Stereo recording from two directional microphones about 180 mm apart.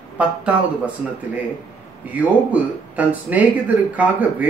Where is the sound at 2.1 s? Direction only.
10° right (ahead or behind).